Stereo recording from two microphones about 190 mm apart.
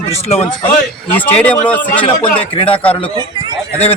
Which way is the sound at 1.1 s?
10° left (ahead or behind).